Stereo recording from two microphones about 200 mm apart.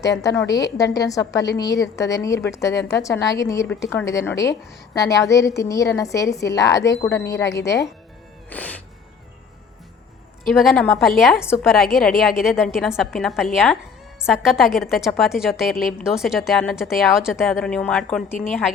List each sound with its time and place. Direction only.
0.3 s a woman's voice: 15° left (ahead or behind)
8.4 s music: 5° left (ahead or behind)
10.5 s a woman's voice: centre (ahead or behind)